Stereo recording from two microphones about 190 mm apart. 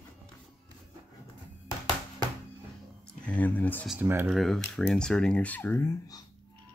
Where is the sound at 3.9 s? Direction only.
10° right (ahead or behind).